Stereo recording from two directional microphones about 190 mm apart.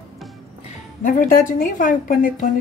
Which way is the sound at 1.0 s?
45° left (ahead or behind).